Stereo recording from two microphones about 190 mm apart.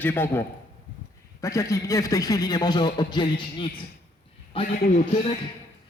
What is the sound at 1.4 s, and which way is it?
A man's voice, 15° left (ahead or behind).